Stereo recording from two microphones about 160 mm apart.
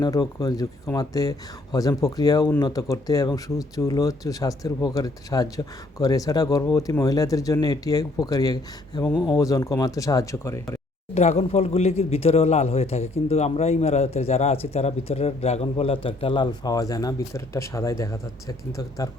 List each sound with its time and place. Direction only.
0.0 s speech: 25° left (ahead or behind)
11.1 s speech: 45° left (ahead or behind); by 19.0 s 20° left (ahead or behind)